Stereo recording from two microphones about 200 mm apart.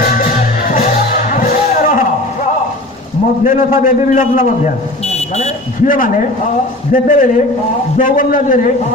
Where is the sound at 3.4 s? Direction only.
45° left (ahead or behind).